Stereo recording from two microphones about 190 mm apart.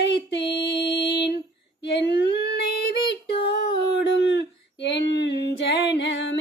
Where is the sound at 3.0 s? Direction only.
30° left (ahead or behind).